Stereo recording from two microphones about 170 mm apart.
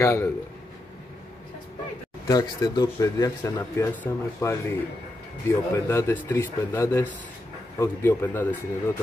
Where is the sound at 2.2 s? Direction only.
20° left (ahead or behind).